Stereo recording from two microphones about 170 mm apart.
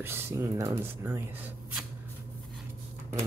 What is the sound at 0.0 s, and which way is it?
Speech, 15° right (ahead or behind).